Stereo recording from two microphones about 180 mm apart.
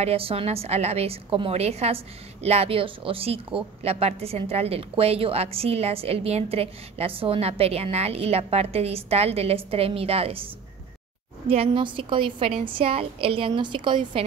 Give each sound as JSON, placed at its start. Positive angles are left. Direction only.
{"t": 0.0, "sound": "a woman's voice", "side_deg": -35}
{"t": 11.4, "sound": "a woman's voice", "side_deg": -35}